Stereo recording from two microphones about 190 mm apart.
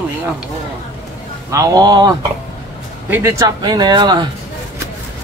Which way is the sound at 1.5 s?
20° right (ahead or behind).